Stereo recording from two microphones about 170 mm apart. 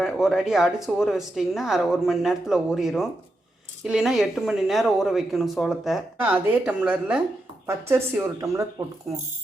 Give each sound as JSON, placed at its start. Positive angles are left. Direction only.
{"t": 0.0, "sound": "speech", "side_deg": 0}